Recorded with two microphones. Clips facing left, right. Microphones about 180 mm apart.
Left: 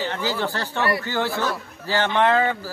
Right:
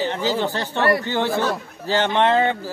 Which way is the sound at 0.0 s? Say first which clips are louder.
Right 3 dB; 20° right (ahead or behind).